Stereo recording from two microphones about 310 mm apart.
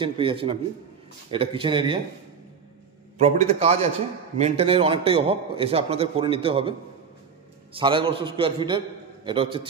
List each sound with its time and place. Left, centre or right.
0.0 s a man's voice: centre
3.2 s a man's voice: centre
7.7 s a man's voice: centre